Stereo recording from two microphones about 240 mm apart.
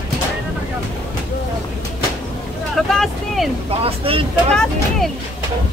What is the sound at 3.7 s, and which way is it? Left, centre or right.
Vehicle, right.